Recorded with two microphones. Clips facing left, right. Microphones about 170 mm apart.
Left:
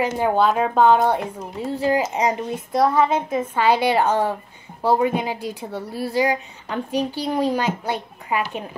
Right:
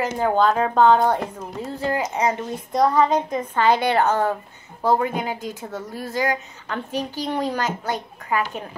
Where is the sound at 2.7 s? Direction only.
5° left (ahead or behind).